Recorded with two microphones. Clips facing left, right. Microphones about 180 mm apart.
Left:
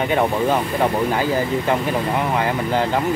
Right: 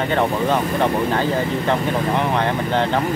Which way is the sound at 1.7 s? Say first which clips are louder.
Right 2 dB; 5° left (ahead or behind).